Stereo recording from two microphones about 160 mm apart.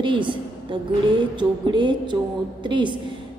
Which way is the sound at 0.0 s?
30° right (ahead or behind).